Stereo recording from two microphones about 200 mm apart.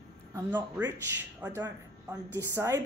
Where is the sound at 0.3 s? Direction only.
10° right (ahead or behind).